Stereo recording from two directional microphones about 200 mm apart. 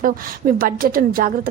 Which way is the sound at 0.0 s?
45° right (ahead or behind).